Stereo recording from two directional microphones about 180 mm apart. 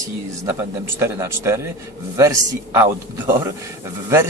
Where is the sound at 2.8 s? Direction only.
10° right (ahead or behind).